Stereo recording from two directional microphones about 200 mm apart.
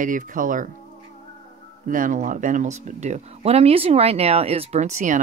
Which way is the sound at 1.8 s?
40° right (ahead or behind).